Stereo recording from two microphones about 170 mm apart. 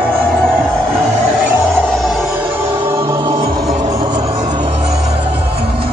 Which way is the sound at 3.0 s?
20° right (ahead or behind).